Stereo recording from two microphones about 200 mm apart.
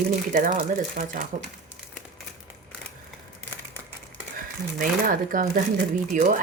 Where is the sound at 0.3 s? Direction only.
40° right (ahead or behind).